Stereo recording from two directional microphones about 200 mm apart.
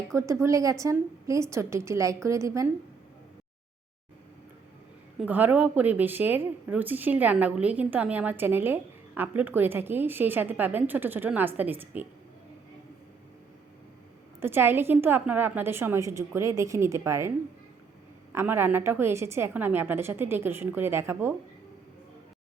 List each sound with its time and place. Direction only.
0.1 s speech: 15° right (ahead or behind)
5.2 s speech: 10° right (ahead or behind)
14.4 s speech: 10° right (ahead or behind)